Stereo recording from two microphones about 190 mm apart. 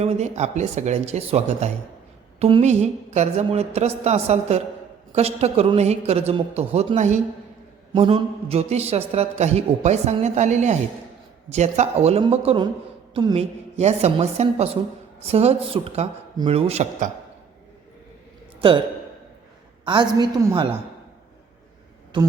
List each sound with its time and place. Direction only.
0.0 s a man's voice: 35° right (ahead or behind)
19.8 s a woman's voice: 25° right (ahead or behind)
22.1 s a woman's voice: 25° right (ahead or behind)